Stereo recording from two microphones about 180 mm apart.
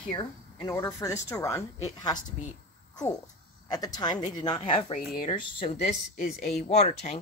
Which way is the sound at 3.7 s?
20° left (ahead or behind).